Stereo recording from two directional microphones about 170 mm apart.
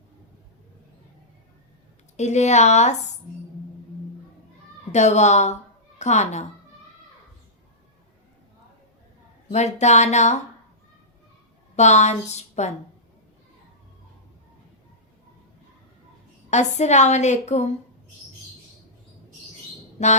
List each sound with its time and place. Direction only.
2.1 s a woman's voice: 45° left (ahead or behind)
4.9 s a woman's voice: 40° left (ahead or behind)
9.5 s a woman's voice: 40° left (ahead or behind)
11.8 s a woman's voice: 45° left (ahead or behind)
16.5 s a woman's voice: 40° left (ahead or behind)
20.0 s a woman's voice: 40° left (ahead or behind)